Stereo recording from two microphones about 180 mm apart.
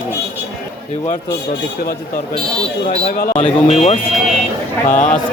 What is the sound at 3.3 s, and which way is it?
Speech, 40° left (ahead or behind).